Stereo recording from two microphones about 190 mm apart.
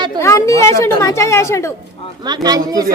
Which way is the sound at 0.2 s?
15° left (ahead or behind).